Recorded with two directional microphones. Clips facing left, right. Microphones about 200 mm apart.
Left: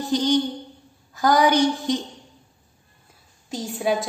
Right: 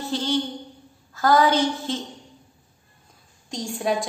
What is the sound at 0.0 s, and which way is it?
A woman's voice, 15° left (ahead or behind).